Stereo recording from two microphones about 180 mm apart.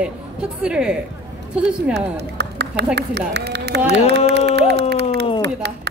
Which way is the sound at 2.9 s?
70° right (ahead or behind).